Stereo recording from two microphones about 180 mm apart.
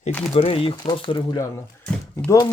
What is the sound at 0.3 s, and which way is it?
Speech, 30° left (ahead or behind).